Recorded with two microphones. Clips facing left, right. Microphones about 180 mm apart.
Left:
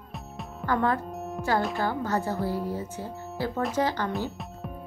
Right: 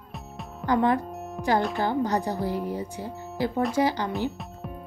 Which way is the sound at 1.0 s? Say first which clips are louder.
Left 1 dB; centre (ahead or behind).